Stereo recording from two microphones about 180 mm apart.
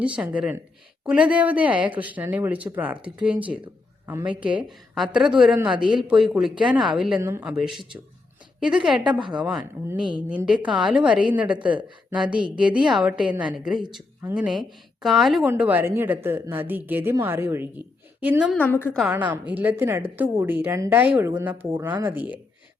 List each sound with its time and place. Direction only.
0.0 s a woman's voice: 5° right (ahead or behind)
7.2 s a woman's voice: 15° right (ahead or behind)
8.6 s a woman's voice: 5° right (ahead or behind)
10.0 s a woman's voice: 25° right (ahead or behind)
10.2 s a woman's voice: 5° right (ahead or behind)
18.5 s a woman's voice: 10° left (ahead or behind)
18.9 s a woman's voice: 10° right (ahead or behind)